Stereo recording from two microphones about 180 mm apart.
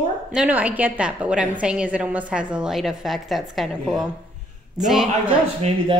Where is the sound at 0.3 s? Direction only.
5° right (ahead or behind).